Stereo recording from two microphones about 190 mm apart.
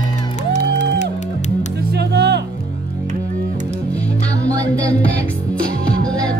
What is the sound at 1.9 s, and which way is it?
Music, 60° right (ahead or behind).